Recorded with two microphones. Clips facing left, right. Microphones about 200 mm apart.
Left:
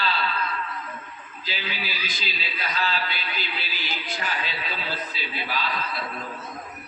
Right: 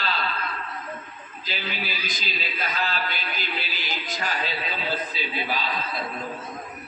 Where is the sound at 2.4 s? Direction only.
45° right (ahead or behind).